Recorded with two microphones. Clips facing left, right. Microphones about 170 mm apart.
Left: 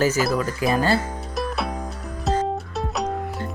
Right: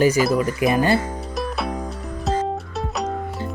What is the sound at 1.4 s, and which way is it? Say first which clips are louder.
Music: even; centre (ahead or behind).